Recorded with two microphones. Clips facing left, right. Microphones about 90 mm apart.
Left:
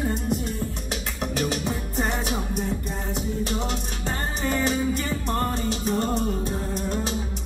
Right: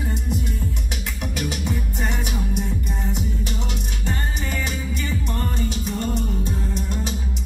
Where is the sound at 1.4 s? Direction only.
35° left (ahead or behind).